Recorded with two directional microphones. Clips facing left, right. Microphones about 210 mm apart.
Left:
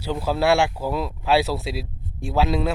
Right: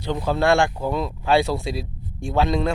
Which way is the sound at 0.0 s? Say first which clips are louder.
Right 1 dB; 5° left (ahead or behind).